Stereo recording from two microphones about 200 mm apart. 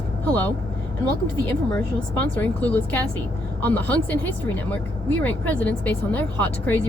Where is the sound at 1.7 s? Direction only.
5° left (ahead or behind).